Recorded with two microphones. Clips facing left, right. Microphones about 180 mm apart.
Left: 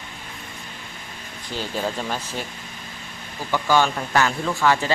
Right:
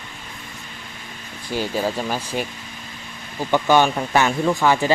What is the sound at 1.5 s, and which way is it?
Speech, 10° right (ahead or behind).